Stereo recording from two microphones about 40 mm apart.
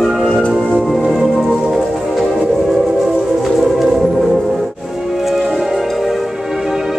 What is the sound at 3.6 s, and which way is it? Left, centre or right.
Music, centre.